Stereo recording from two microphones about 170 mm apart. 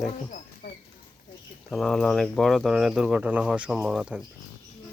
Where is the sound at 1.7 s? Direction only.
Centre (ahead or behind).